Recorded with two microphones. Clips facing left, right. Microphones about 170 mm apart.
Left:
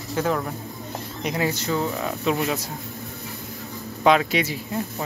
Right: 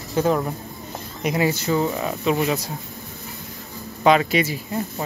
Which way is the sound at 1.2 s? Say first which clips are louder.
Right 4 dB; 5° right (ahead or behind).